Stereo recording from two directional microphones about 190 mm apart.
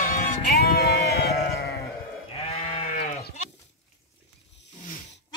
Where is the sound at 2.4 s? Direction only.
30° left (ahead or behind).